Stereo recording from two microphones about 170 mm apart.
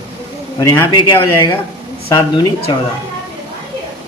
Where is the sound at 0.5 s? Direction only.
20° left (ahead or behind).